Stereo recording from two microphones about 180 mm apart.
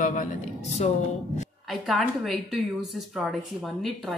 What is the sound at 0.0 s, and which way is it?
Speech, 45° left (ahead or behind).